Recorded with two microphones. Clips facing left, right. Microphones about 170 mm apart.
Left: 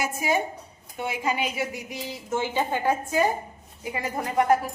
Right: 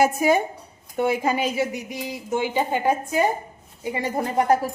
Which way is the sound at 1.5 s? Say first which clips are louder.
Right 5 dB; 15° right (ahead or behind).